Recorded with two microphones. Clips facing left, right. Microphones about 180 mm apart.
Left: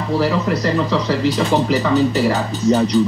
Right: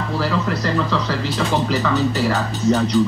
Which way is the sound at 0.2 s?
15° left (ahead or behind).